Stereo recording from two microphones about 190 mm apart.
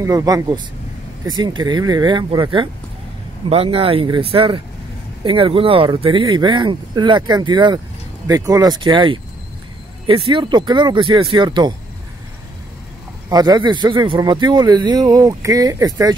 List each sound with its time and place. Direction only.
0.0 s a man's voice: 20° right (ahead or behind)
13.3 s a man's voice: 20° right (ahead or behind)